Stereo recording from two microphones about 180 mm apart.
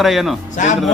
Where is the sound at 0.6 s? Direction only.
45° left (ahead or behind).